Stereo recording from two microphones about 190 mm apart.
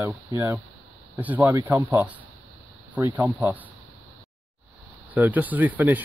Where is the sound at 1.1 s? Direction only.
10° right (ahead or behind).